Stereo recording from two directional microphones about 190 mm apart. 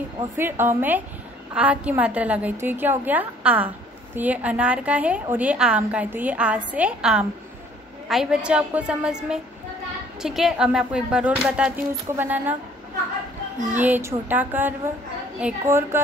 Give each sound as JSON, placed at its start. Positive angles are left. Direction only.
{"t": 0.4, "sound": "a woman's voice", "side_deg": -10}
{"t": 13.7, "sound": "a woman's voice", "side_deg": -10}